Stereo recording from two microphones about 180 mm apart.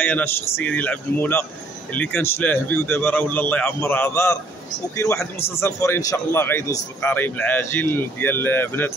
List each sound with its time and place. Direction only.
0.0 s a man's voice: 10° left (ahead or behind)